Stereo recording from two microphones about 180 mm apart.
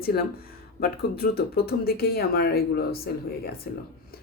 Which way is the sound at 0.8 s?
55° left (ahead or behind).